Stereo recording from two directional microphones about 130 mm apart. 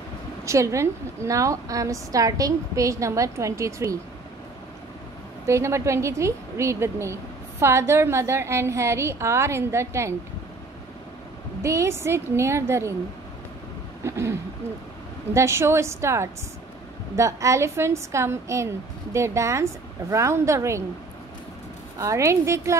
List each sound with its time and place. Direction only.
0.5 s a woman's voice: 25° right (ahead or behind)
5.5 s a woman's voice: 20° right (ahead or behind)
11.6 s a woman's voice: 20° right (ahead or behind)
14.0 s a woman's voice: 20° right (ahead or behind)
15.3 s a woman's voice: 20° right (ahead or behind)
21.9 s a woman's voice: 25° right (ahead or behind)